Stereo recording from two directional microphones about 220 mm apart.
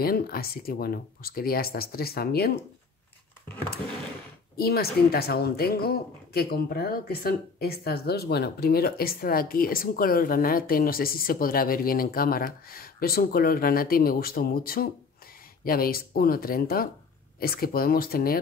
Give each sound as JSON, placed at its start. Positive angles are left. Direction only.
{"t": 0.0, "sound": "a woman's voice", "side_deg": 45}
{"t": 4.6, "sound": "a woman's voice", "side_deg": 45}